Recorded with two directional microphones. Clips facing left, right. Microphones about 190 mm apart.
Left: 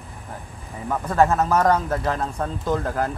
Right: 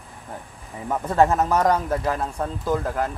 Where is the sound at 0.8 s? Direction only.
20° right (ahead or behind); by 3.1 s centre (ahead or behind).